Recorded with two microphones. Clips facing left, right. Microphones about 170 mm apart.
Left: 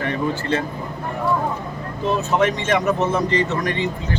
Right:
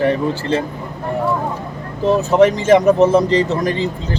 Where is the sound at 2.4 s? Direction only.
35° right (ahead or behind).